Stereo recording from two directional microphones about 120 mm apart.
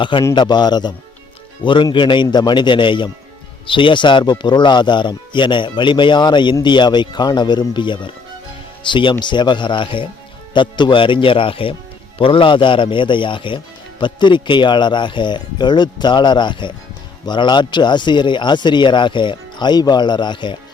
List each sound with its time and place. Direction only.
0.0 s speech: 45° left (ahead or behind)